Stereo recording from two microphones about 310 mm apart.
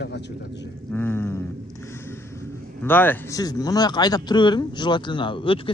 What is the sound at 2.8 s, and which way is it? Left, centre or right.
A man's voice, centre.